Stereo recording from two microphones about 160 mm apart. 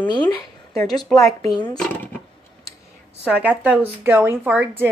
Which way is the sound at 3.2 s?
10° right (ahead or behind).